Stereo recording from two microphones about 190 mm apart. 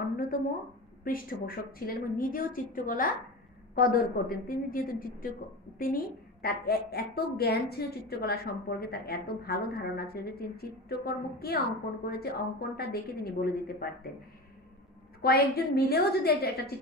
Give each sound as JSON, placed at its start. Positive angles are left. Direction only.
{"t": 1.0, "sound": "a woman's voice", "side_deg": 50}
{"t": 15.2, "sound": "a woman's voice", "side_deg": 55}